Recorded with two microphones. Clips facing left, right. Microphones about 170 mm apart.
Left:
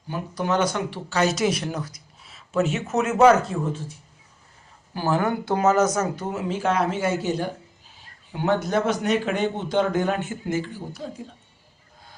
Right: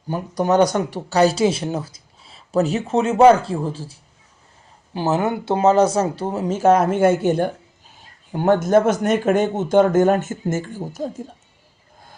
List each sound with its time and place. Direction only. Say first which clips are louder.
0.1 s speech: right 6 dB; 40° right (ahead or behind)
4.9 s speech: right 3 dB; 25° right (ahead or behind); by 11.1 s 45° right (ahead or behind)